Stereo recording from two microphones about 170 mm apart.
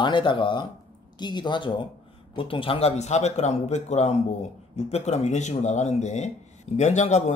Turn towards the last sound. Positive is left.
turn(degrees=45)  # may be behind; listen again after turning